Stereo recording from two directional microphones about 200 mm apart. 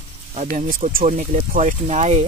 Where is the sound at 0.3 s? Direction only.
35° right (ahead or behind).